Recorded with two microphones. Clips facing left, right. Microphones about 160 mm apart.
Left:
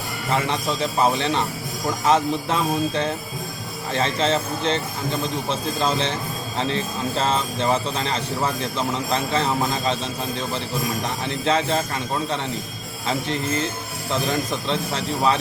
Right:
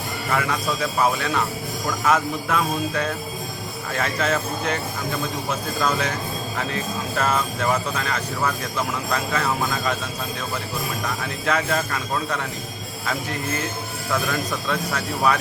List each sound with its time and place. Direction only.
0.3 s speech: 25° left (ahead or behind)
11.0 s speech: 25° left (ahead or behind)